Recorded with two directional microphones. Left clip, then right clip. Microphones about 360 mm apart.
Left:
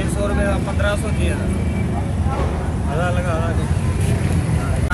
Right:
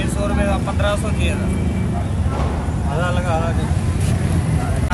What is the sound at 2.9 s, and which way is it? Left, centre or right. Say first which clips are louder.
Speech: right 1 dB; right.